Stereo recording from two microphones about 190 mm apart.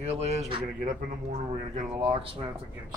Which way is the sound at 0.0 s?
35° right (ahead or behind).